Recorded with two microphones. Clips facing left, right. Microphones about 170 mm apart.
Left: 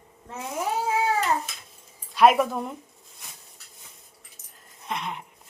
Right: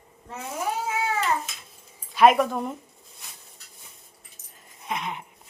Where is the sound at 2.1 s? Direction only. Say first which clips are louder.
Right 1 dB; centre (ahead or behind).